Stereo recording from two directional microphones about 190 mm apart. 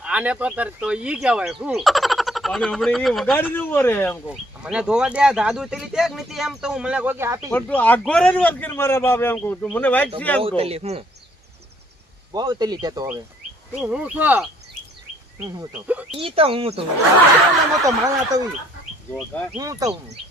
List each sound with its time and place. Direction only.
0.0 s speech: 5° right (ahead or behind); by 4.2 s 10° left (ahead or behind)
4.3 s speech: 5° right (ahead or behind)
7.5 s a man's voice: 10° left (ahead or behind)
10.6 s speech: 30° right (ahead or behind)
12.3 s speech: 20° right (ahead or behind)
13.8 s speech: 5° right (ahead or behind)
16.1 s speech: 30° right (ahead or behind)
17.8 s speech: 20° right (ahead or behind)
19.1 s a man's voice: 5° left (ahead or behind)
19.5 s speech: 20° right (ahead or behind)